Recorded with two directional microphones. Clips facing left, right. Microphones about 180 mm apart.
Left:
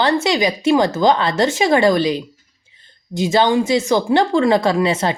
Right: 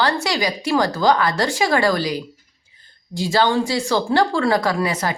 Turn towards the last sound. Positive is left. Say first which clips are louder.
# left 4 dB
turn(degrees=25)  # may be behind; listen again after turning